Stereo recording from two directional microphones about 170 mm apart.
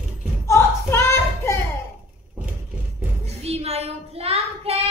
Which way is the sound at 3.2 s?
35° right (ahead or behind).